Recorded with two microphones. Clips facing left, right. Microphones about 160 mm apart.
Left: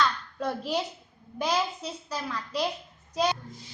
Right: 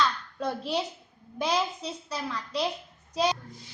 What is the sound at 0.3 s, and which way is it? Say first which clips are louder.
A woman's voice: even; 5° left (ahead or behind).